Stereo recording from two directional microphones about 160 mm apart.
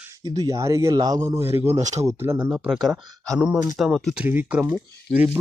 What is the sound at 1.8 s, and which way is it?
Speech, 50° right (ahead or behind).